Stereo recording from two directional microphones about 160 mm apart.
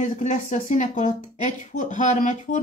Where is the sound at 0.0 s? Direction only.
50° left (ahead or behind).